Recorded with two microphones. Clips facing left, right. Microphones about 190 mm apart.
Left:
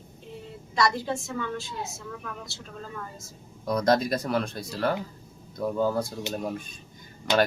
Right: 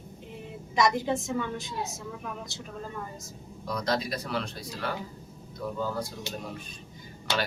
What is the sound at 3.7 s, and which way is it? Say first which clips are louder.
Speech: left 7 dB; 45° left (ahead or behind).